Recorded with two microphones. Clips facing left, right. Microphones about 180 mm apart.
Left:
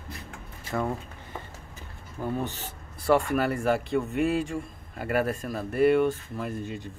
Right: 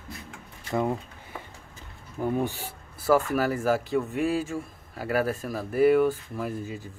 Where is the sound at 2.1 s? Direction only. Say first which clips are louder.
Right 4 dB; 15° right (ahead or behind).